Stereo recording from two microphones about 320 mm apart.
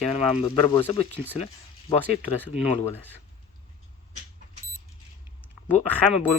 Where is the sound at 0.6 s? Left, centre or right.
Centre.